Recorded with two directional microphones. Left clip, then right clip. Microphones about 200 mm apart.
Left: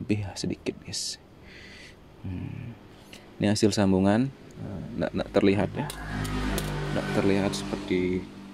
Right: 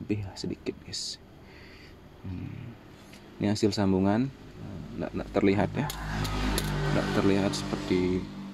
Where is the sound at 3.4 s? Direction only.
15° left (ahead or behind).